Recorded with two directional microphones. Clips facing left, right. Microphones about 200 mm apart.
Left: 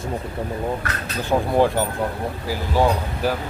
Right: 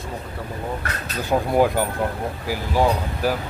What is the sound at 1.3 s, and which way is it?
Speech, 15° right (ahead or behind).